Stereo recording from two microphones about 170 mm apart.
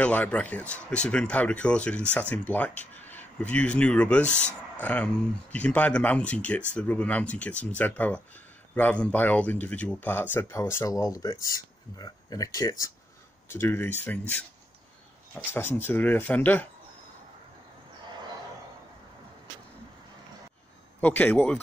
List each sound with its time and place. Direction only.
0.0 s speech: 10° left (ahead or behind)
21.0 s speech: 10° left (ahead or behind)